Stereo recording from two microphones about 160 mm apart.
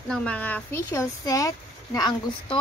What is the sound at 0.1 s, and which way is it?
Speech, 10° left (ahead or behind).